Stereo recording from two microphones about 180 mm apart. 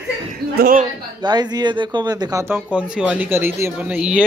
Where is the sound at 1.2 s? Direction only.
25° right (ahead or behind).